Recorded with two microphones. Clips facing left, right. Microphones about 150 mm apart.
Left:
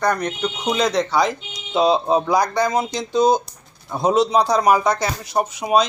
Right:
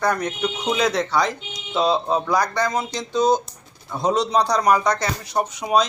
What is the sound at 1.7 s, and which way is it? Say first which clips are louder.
Speech: left 3 dB; 15° left (ahead or behind).